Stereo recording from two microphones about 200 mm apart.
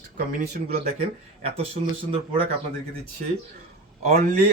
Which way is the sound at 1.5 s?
30° right (ahead or behind).